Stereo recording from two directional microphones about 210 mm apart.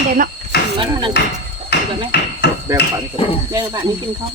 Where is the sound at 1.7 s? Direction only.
50° left (ahead or behind).